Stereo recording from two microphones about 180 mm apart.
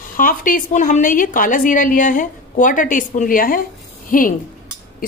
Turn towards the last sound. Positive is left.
turn(degrees=50)  # may be behind; listen again after turning